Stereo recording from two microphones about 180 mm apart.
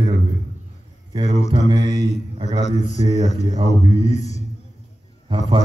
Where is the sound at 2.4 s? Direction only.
25° right (ahead or behind).